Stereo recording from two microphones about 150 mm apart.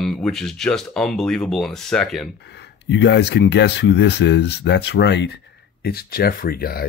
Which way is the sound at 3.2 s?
90° left.